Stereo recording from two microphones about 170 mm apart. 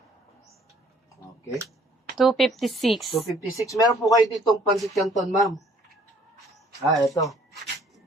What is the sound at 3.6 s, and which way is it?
Speech, 20° left (ahead or behind).